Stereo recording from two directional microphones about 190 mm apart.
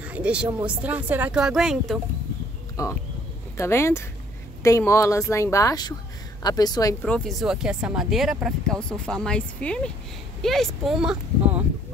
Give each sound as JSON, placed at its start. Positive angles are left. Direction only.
{"t": 0.0, "sound": "a sound", "side_deg": -5}
{"t": 0.7, "sound": "speech", "side_deg": -10}
{"t": 2.8, "sound": "a woman's voice", "side_deg": 15}
{"t": 7.1, "sound": "speech", "side_deg": 5}